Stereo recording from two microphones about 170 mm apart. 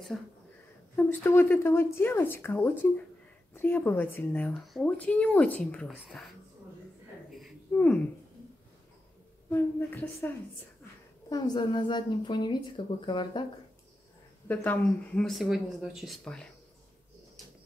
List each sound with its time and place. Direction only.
0.1 s speech: centre (ahead or behind)
0.9 s a woman's voice: 15° left (ahead or behind)
7.2 s a sound: centre (ahead or behind)
7.7 s a woman's voice: 10° left (ahead or behind)
9.5 s a woman's voice: 10° left (ahead or behind)
11.2 s a woman's voice: 25° left (ahead or behind)
14.5 s speech: 10° left (ahead or behind)